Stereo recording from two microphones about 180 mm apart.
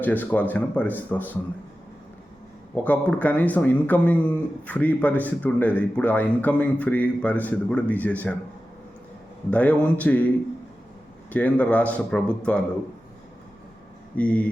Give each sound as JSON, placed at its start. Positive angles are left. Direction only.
{"t": 0.0, "sound": "speech", "side_deg": 10}
{"t": 2.7, "sound": "speech", "side_deg": 10}
{"t": 9.5, "sound": "speech", "side_deg": 10}
{"t": 11.3, "sound": "speech", "side_deg": 10}
{"t": 14.2, "sound": "speech", "side_deg": 5}